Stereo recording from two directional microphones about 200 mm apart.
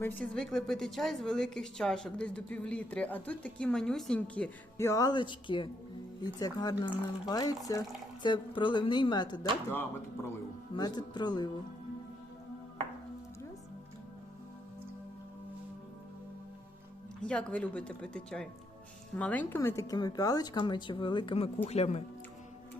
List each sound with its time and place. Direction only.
0.0 s a woman's voice: 5° left (ahead or behind); by 9.5 s 20° left (ahead or behind)
10.8 s a woman's voice: 20° left (ahead or behind)
17.2 s a woman's voice: 5° left (ahead or behind); by 22.0 s 30° left (ahead or behind)